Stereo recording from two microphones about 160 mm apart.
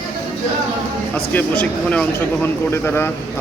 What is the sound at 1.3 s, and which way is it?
Speech, 10° left (ahead or behind).